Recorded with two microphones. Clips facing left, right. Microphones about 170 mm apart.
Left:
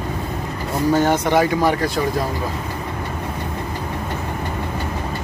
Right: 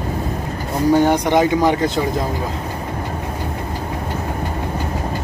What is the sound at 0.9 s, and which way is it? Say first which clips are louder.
Speech: right 2 dB; 15° right (ahead or behind).